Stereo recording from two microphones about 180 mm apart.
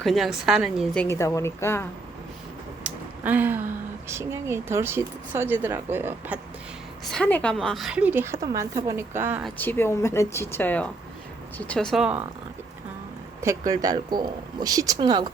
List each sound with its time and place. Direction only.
0.0 s a woman's voice: centre (ahead or behind)
1.0 s speech: 15° left (ahead or behind)
2.8 s a sound: 10° right (ahead or behind)
4.1 s a woman's voice: 15° right (ahead or behind)
7.1 s a woman's voice: 10° left (ahead or behind); by 9.4 s 10° right (ahead or behind)
9.6 s a woman's voice: 10° left (ahead or behind); by 12.2 s 5° right (ahead or behind)
13.4 s speech: 15° right (ahead or behind)